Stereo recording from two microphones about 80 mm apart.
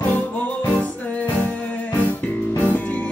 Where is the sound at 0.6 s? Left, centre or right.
Centre.